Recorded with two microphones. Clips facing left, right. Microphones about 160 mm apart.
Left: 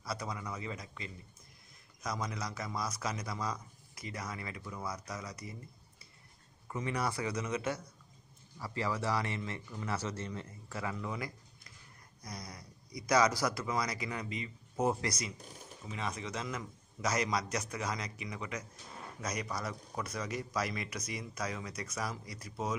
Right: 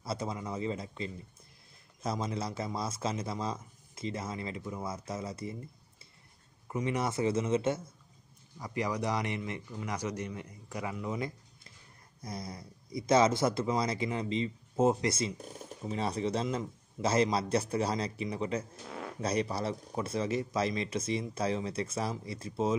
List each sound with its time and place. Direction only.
0.0 s speech: 25° right (ahead or behind)
6.7 s a man's voice: 20° right (ahead or behind)